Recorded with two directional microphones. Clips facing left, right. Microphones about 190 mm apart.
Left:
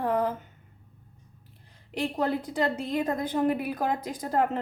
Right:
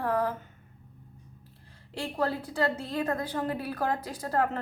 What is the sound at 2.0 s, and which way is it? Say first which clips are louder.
Speech: left 3 dB; 20° left (ahead or behind).